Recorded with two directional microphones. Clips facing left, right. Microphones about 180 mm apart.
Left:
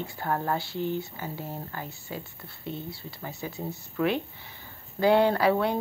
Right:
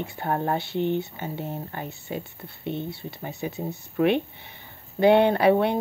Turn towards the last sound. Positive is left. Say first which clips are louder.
# right 4 dB
turn(degrees=-20)  # may be behind; listen again after turning